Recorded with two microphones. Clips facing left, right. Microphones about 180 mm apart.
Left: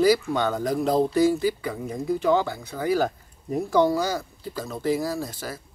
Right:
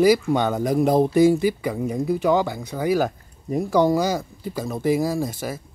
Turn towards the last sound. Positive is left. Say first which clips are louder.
# right 5 dB
turn(degrees=-15)  # may be behind; listen again after turning